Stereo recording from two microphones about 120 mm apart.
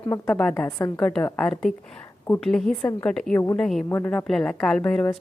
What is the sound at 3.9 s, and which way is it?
Speech, 20° left (ahead or behind).